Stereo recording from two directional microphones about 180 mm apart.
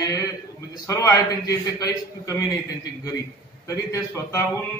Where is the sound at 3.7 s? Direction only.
15° left (ahead or behind).